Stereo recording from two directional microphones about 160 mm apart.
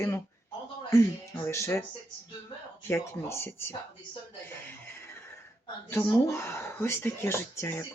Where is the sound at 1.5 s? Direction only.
15° left (ahead or behind).